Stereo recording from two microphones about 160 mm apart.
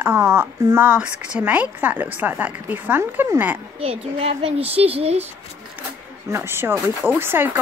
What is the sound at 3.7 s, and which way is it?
A woman's voice, 40° right (ahead or behind).